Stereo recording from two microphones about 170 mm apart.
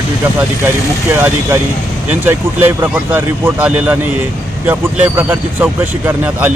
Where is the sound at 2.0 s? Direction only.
10° right (ahead or behind).